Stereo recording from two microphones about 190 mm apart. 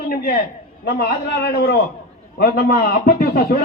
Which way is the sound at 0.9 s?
50° left (ahead or behind).